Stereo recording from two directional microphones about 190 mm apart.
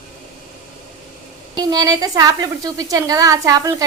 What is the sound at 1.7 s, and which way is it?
A woman's voice, 20° right (ahead or behind).